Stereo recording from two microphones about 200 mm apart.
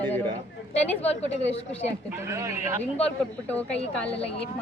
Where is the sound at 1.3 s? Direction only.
30° left (ahead or behind).